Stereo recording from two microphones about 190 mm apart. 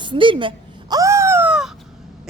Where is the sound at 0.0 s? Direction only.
25° right (ahead or behind); by 1.7 s 5° right (ahead or behind).